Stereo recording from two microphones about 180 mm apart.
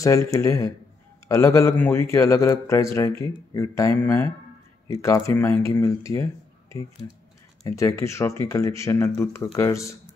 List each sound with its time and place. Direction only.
0.0 s a man's voice: 15° left (ahead or behind)
7.6 s a man's voice: 15° left (ahead or behind)